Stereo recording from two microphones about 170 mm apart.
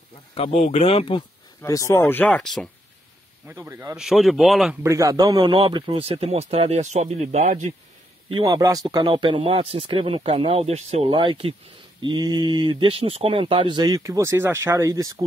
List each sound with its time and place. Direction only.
0.3 s speech: 40° left (ahead or behind)
1.6 s speech: 20° left (ahead or behind); by 2.7 s 5° left (ahead or behind)
3.4 s speech: 15° right (ahead or behind)
3.9 s speech: 5° right (ahead or behind)
4.8 s speech: 20° right (ahead or behind); by 7.7 s 45° right (ahead or behind)
8.3 s speech: 25° right (ahead or behind)